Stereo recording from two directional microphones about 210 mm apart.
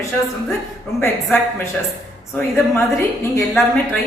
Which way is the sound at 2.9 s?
15° left (ahead or behind).